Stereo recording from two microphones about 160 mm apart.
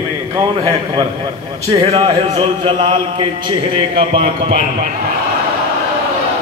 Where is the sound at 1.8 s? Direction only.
35° right (ahead or behind).